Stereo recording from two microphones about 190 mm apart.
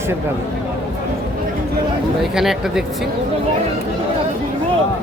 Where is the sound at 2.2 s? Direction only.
Centre (ahead or behind).